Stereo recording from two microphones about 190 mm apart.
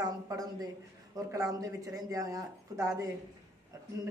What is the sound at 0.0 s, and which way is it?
A woman's voice, 20° right (ahead or behind).